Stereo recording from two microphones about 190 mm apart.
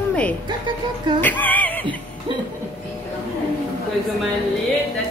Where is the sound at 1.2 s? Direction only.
10° left (ahead or behind).